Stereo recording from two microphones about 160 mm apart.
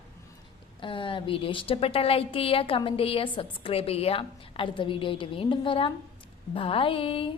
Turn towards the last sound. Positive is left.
turn(degrees=35)  # may be behind; listen again after turning